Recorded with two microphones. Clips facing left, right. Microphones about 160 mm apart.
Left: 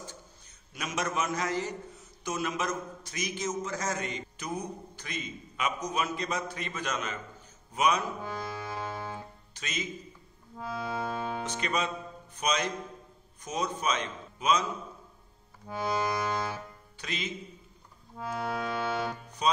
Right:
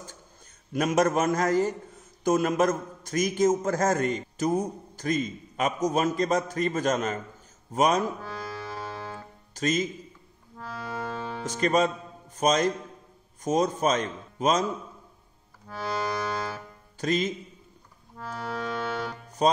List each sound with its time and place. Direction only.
0.7 s a man's voice: 50° right (ahead or behind)
8.2 s music: 15° left (ahead or behind)
9.5 s a man's voice: 45° right (ahead or behind)
10.6 s music: 15° left (ahead or behind)
11.4 s a man's voice: 40° right (ahead or behind)
15.7 s accordion: 15° left (ahead or behind)
17.0 s a man's voice: 45° right (ahead or behind)
18.1 s accordion: 10° left (ahead or behind)
19.4 s a man's voice: 45° right (ahead or behind)